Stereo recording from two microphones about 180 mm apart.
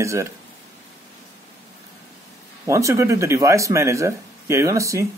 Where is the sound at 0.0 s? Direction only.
15° right (ahead or behind).